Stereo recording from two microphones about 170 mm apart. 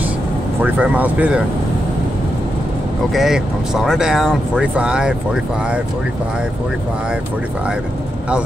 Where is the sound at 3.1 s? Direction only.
Centre (ahead or behind).